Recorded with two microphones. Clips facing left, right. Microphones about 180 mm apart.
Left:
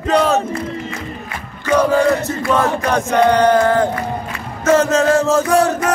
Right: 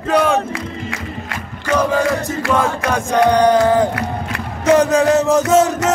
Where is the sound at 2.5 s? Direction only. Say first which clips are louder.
Left 2 dB; 10° right (ahead or behind).